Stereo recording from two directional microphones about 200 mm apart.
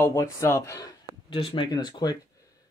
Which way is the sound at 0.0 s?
15° left (ahead or behind).